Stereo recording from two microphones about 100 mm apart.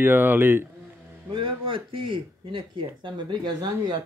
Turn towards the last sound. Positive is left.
turn(degrees=-45)  # may be behind; listen again after turning